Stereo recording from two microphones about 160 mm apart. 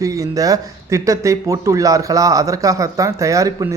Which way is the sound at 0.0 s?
20° right (ahead or behind).